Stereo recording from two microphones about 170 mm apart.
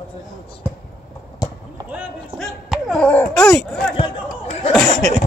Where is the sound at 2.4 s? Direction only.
Centre (ahead or behind).